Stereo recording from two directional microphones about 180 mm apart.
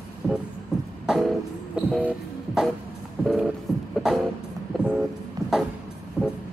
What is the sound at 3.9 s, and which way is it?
Music, centre (ahead or behind).